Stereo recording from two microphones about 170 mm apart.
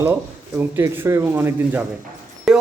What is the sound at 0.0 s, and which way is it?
Speech, 15° right (ahead or behind).